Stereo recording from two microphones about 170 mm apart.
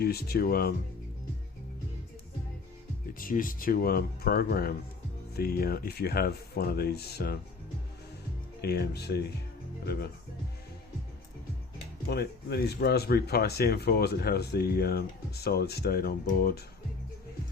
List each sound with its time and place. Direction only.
0.0 s speech: 70° left (ahead or behind)
3.2 s speech: 55° left (ahead or behind); by 7.3 s 70° left (ahead or behind)
8.6 s speech: 70° left (ahead or behind)
12.0 s speech: 70° left (ahead or behind)